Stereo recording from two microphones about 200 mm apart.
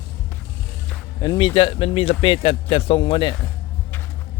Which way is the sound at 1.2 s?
20° left (ahead or behind).